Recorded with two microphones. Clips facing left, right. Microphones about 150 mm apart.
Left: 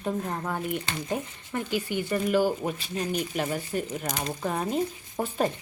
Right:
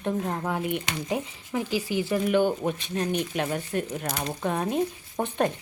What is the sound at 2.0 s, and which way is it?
Speech, centre (ahead or behind).